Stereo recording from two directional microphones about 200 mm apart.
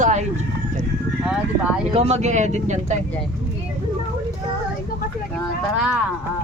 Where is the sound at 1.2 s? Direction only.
5° right (ahead or behind).